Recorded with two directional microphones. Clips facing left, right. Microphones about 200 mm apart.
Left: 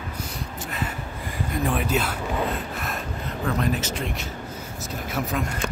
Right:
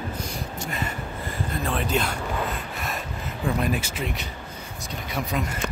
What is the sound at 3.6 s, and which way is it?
Speech, 10° right (ahead or behind).